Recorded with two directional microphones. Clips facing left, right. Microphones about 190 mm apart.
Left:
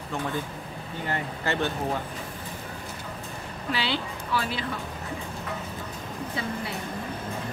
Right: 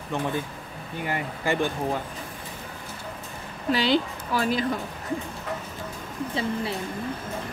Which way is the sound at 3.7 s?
40° right (ahead or behind).